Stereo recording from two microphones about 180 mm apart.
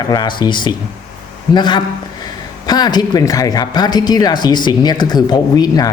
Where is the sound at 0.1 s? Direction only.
25° left (ahead or behind).